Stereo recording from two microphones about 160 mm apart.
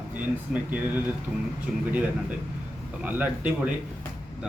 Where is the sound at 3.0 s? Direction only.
10° right (ahead or behind).